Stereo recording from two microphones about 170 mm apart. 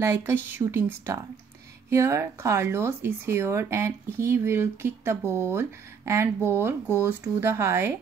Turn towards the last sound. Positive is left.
turn(degrees=-15)  # may be behind; listen again after turning